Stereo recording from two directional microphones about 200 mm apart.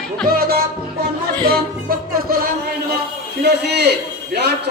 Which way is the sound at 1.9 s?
45° right (ahead or behind).